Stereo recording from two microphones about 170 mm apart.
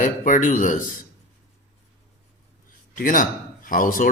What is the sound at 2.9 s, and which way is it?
Speech, 50° left (ahead or behind).